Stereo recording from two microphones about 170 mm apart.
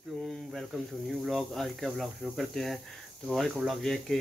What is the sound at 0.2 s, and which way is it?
Snake, centre (ahead or behind).